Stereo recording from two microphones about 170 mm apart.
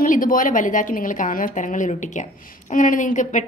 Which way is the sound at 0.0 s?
50° left (ahead or behind).